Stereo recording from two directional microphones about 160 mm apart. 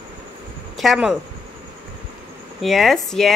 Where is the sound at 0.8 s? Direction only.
Centre (ahead or behind).